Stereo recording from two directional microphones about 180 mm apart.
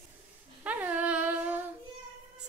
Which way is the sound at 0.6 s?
10° right (ahead or behind).